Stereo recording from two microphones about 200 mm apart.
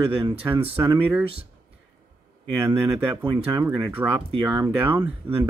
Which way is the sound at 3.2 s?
20° right (ahead or behind).